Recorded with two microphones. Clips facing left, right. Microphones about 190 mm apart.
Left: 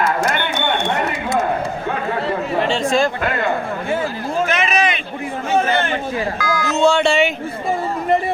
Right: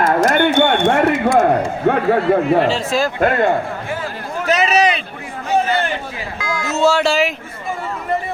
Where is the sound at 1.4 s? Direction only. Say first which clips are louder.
Right 6 dB; 50° right (ahead or behind).